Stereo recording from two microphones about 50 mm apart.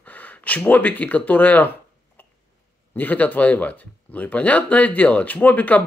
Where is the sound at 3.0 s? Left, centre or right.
Left.